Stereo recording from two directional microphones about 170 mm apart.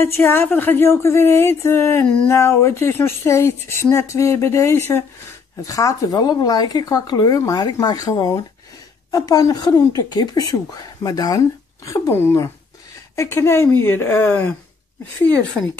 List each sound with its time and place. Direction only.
0.0 s speech: 15° left (ahead or behind)